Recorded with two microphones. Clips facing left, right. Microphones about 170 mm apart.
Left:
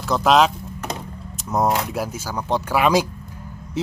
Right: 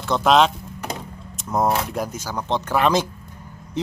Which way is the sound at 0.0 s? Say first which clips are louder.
Even; centre (ahead or behind).